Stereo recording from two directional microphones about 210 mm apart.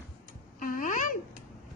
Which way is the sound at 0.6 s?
40° left (ahead or behind).